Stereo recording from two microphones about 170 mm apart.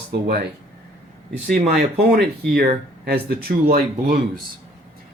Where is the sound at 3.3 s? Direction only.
60° right (ahead or behind).